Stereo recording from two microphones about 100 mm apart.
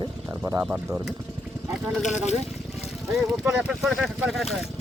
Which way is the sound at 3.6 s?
5° right (ahead or behind).